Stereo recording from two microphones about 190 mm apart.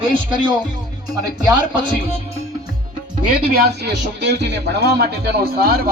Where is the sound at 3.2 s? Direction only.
55° right (ahead or behind).